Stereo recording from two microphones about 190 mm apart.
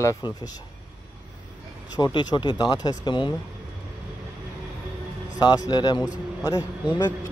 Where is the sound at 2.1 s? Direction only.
25° left (ahead or behind).